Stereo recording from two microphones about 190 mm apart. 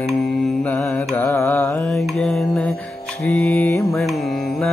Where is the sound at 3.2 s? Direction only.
10° left (ahead or behind).